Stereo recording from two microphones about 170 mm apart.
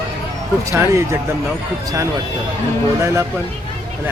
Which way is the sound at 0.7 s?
15° right (ahead or behind).